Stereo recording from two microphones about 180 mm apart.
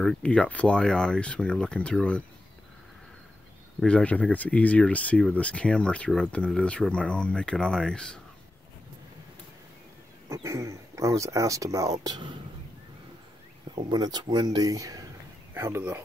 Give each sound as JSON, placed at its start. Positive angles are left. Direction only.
{"t": 0.0, "sound": "speech", "side_deg": 5}
{"t": 3.8, "sound": "speech", "side_deg": 5}
{"t": 10.3, "sound": "speech", "side_deg": -15}
{"t": 13.7, "sound": "speech", "side_deg": -25}